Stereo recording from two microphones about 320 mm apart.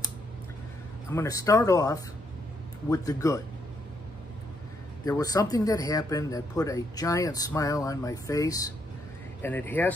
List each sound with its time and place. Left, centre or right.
1.1 s speech: centre
5.0 s speech: centre